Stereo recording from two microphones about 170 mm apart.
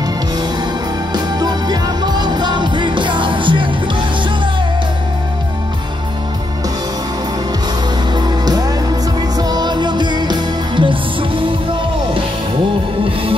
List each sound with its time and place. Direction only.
1.1 s music: 25° right (ahead or behind)
8.1 s music: 25° right (ahead or behind)